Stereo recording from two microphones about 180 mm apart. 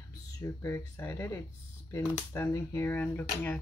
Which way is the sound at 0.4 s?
15° left (ahead or behind).